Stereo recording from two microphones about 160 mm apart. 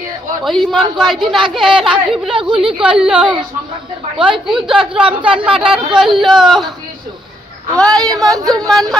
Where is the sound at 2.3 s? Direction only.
35° right (ahead or behind).